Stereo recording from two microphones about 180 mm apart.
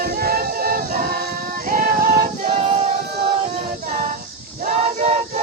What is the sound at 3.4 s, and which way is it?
A capella, 45° right (ahead or behind).